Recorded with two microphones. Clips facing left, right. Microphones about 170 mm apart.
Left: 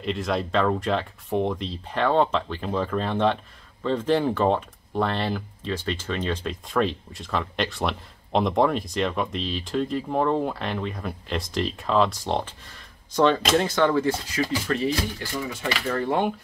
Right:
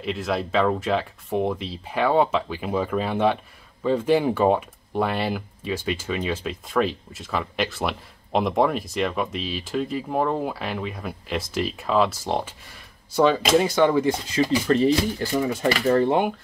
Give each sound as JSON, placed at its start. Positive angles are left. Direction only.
{"t": 0.0, "sound": "speech", "side_deg": 0}
{"t": 14.7, "sound": "speech", "side_deg": -35}
{"t": 15.3, "sound": "speech", "side_deg": -45}